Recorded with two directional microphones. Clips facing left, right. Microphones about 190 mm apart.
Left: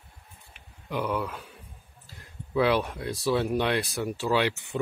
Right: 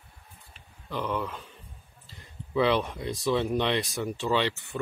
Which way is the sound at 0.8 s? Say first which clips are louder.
Left 2 dB; 10° left (ahead or behind).